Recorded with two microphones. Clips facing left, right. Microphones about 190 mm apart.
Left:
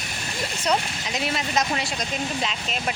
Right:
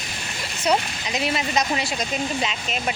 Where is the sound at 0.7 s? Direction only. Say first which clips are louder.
Right 3 dB; 5° right (ahead or behind).